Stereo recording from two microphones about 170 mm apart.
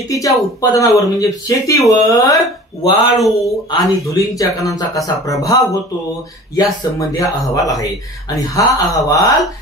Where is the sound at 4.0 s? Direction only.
20° left (ahead or behind).